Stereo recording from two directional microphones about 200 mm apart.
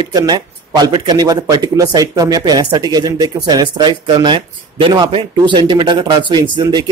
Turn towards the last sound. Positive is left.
turn(degrees=-20)  # may be behind; listen again after turning